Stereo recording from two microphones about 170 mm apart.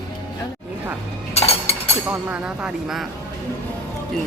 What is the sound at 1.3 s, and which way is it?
Cutlery, 35° left (ahead or behind).